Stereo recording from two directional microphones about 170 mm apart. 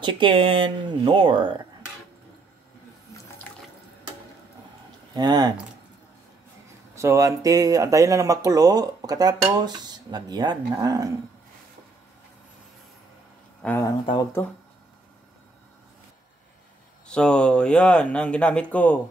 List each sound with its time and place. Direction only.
0.0 s speech: 30° right (ahead or behind)
5.1 s speech: 25° right (ahead or behind)
7.0 s speech: 20° right (ahead or behind)
13.6 s speech: 10° left (ahead or behind)
13.8 s speech: 25° left (ahead or behind)
17.1 s speech: 5° left (ahead or behind)